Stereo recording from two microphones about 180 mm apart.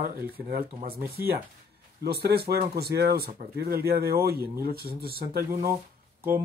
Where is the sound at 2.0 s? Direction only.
65° right (ahead or behind).